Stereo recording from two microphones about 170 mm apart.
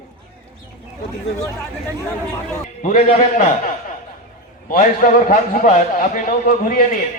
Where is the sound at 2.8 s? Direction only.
45° left (ahead or behind).